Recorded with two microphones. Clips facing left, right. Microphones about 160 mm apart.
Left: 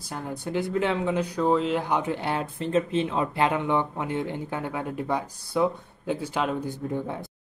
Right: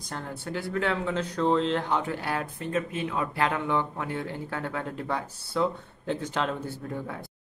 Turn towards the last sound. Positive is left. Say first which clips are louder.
# left 5 dB
turn(degrees=20)  # may be behind; listen again after turning